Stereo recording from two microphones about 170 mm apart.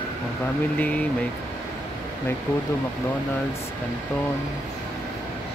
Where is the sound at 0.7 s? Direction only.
10° left (ahead or behind).